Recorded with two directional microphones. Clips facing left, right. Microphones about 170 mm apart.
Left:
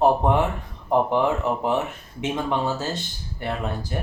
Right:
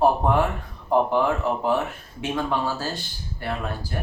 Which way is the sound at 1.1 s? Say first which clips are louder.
Even; 20° left (ahead or behind).